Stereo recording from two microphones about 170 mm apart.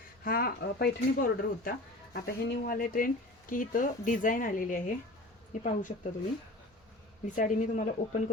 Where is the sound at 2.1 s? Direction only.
65° left (ahead or behind).